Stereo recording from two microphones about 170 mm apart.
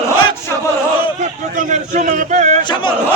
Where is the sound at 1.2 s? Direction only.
45° right (ahead or behind).